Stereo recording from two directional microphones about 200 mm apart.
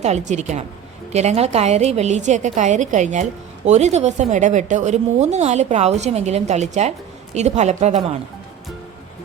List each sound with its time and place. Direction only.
0.0 s a woman's voice: 35° right (ahead or behind)